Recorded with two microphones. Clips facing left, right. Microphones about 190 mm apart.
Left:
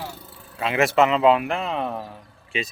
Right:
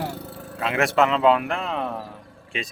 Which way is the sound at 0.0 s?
60° right (ahead or behind).